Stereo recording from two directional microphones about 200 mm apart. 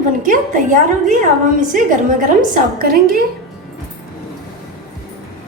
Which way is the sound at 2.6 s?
45° right (ahead or behind).